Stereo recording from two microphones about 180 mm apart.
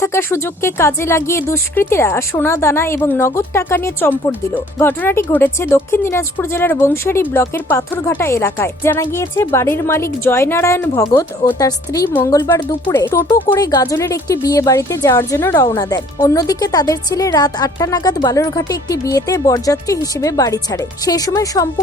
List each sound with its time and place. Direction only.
0.0 s a woman's voice: 15° left (ahead or behind)